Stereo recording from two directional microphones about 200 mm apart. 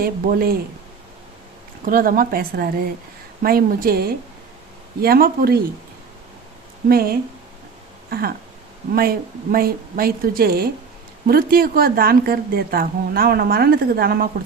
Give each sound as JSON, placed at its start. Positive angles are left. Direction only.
{"t": 0.0, "sound": "a woman's voice", "side_deg": -50}
{"t": 1.8, "sound": "a woman's voice", "side_deg": -45}
{"t": 6.8, "sound": "a woman's voice", "side_deg": -50}
{"t": 8.9, "sound": "a woman's voice", "side_deg": -50}